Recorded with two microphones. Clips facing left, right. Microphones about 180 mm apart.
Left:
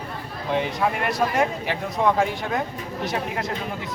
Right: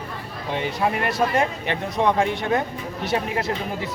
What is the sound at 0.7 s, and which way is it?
Speech, centre (ahead or behind).